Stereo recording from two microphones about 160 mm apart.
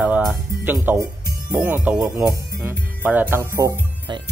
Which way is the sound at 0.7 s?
10° right (ahead or behind).